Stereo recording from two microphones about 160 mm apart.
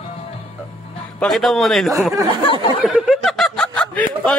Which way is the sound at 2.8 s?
Centre (ahead or behind).